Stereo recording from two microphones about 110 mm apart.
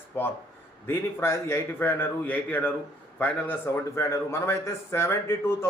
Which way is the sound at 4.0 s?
25° left (ahead or behind).